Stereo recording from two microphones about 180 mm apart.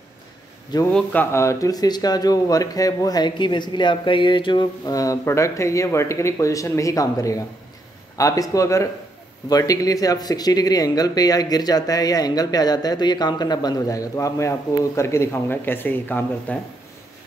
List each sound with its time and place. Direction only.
0.9 s speech: 10° left (ahead or behind)